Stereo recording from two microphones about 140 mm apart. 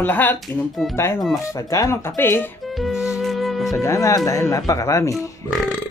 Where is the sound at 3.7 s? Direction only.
20° left (ahead or behind).